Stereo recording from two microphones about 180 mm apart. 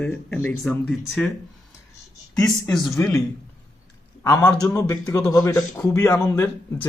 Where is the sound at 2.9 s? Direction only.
15° left (ahead or behind).